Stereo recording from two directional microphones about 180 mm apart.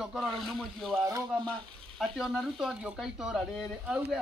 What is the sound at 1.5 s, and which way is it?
Speech, centre (ahead or behind).